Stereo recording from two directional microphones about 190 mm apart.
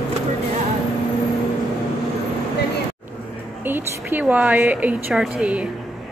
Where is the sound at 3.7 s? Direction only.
10° right (ahead or behind).